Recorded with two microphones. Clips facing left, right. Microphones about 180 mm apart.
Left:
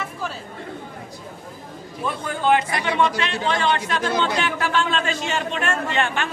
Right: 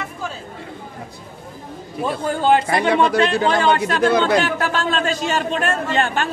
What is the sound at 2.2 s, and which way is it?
A man's voice, 35° right (ahead or behind).